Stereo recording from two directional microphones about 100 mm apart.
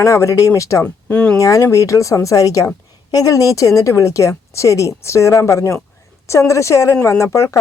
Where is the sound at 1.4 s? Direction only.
35° left (ahead or behind).